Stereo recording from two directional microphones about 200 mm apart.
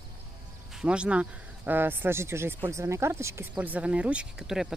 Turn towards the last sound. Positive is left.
turn(degrees=-5)  # may be behind; listen again after turning